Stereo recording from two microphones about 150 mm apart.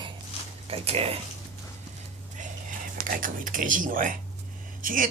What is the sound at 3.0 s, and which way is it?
Speech, 65° right (ahead or behind).